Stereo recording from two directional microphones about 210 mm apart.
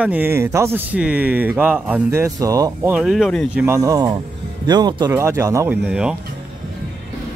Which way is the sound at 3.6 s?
15° right (ahead or behind).